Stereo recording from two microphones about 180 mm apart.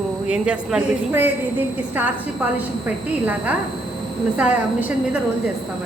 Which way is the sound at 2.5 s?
10° right (ahead or behind).